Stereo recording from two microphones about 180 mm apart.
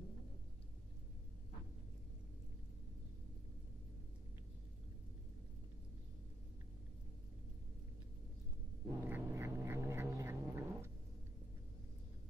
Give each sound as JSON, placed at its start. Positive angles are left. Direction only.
{"t": 8.8, "sound": "cat", "side_deg": -15}